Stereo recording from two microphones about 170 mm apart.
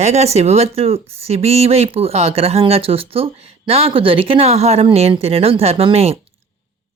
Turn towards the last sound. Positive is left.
turn(degrees=-35)  # may be behind; listen again after turning